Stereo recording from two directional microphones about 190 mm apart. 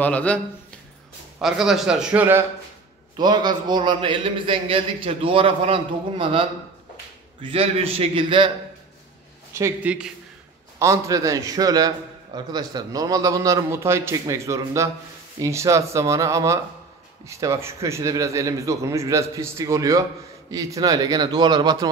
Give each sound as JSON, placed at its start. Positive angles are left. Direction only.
{"t": 0.0, "sound": "speech", "side_deg": 5}
{"t": 1.4, "sound": "a man's voice", "side_deg": 0}
{"t": 3.2, "sound": "a man's voice", "side_deg": -20}
{"t": 7.4, "sound": "a man's voice", "side_deg": -30}
{"t": 9.5, "sound": "speech", "side_deg": -10}
{"t": 10.8, "sound": "a man's voice", "side_deg": -15}